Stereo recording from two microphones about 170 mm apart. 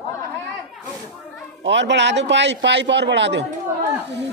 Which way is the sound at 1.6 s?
90° right.